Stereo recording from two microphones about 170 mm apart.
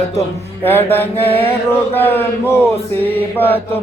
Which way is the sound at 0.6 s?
10° left (ahead or behind).